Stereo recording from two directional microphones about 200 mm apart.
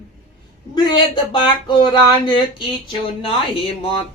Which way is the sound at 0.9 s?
20° left (ahead or behind).